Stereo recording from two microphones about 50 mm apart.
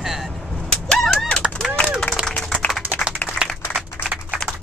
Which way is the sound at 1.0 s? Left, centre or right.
Centre.